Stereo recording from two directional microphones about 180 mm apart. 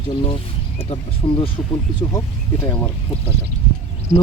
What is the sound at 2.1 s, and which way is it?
Speech, 20° left (ahead or behind).